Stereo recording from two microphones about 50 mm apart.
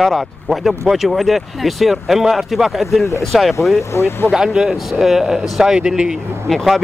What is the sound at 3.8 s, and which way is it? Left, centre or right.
Speech, left.